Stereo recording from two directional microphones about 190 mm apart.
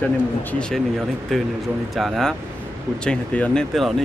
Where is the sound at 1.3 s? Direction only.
Centre (ahead or behind).